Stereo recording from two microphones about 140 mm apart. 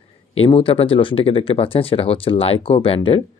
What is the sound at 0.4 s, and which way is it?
Speech, 40° left (ahead or behind).